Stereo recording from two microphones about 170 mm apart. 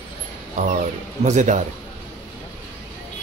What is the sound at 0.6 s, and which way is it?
Speech, 45° right (ahead or behind).